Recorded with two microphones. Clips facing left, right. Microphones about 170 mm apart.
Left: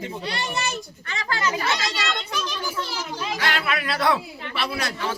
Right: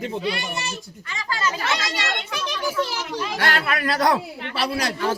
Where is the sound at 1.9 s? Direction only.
55° right (ahead or behind).